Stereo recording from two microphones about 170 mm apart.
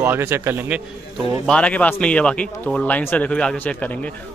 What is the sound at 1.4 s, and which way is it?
Speech, 5° left (ahead or behind).